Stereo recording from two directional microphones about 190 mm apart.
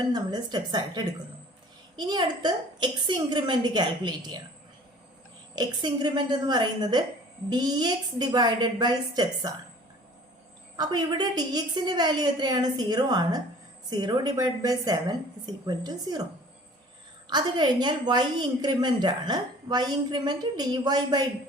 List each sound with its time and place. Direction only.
0.1 s a woman's voice: 20° right (ahead or behind)
5.5 s a woman's voice: 25° right (ahead or behind)
10.8 s a woman's voice: 20° right (ahead or behind)
17.2 s a woman's voice: 20° right (ahead or behind)